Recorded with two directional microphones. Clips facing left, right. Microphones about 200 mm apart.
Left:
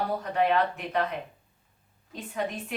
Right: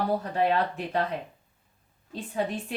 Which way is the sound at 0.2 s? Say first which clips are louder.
Even; 35° right (ahead or behind).